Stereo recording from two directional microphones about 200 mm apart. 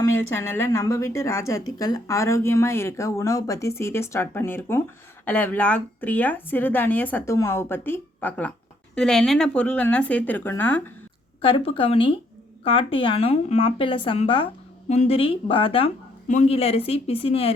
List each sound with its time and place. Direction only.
0.0 s a woman's voice: 15° left (ahead or behind)
11.4 s a woman's voice: 25° left (ahead or behind)